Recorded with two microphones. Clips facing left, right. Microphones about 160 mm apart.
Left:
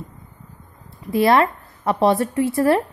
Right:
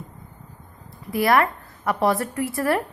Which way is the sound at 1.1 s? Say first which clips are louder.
Left 3 dB; 25° left (ahead or behind).